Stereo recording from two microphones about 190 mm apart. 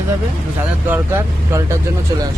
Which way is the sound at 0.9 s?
10° right (ahead or behind).